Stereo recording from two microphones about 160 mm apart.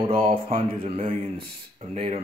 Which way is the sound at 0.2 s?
40° right (ahead or behind).